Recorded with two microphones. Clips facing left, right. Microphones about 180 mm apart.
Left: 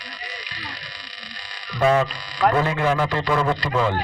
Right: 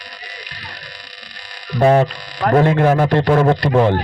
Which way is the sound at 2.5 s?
45° right (ahead or behind).